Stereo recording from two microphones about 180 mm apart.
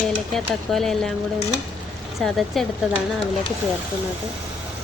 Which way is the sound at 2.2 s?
Centre (ahead or behind).